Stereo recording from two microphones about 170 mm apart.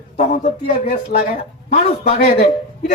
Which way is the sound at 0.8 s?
60° left (ahead or behind).